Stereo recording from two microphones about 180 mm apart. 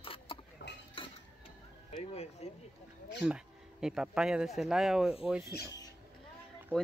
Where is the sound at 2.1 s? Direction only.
35° left (ahead or behind).